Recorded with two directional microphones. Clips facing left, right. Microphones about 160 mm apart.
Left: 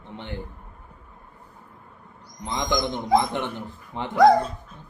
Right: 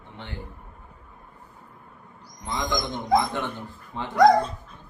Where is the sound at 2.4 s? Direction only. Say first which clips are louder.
Left 3 dB; 20° left (ahead or behind).